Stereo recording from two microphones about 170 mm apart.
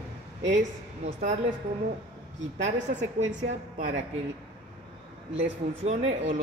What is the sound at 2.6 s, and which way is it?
A woman's voice, 45° right (ahead or behind).